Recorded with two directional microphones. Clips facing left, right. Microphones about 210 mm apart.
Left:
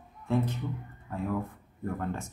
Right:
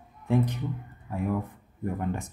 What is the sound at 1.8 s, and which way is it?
Speech, 15° right (ahead or behind).